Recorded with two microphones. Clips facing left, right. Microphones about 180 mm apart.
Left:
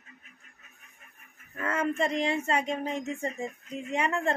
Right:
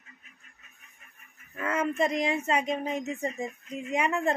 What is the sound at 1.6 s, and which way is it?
Speech, 10° right (ahead or behind).